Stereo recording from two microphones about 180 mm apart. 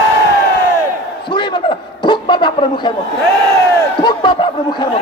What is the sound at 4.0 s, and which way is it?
Speech, 25° left (ahead or behind).